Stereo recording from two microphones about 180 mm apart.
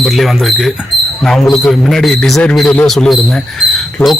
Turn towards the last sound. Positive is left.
turn(degrees=0)  # may be behind; listen again after turning